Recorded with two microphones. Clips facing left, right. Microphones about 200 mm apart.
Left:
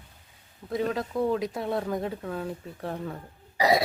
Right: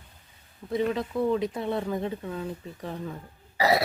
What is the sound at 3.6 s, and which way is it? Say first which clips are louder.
Burping: left 1 dB; 15° left (ahead or behind).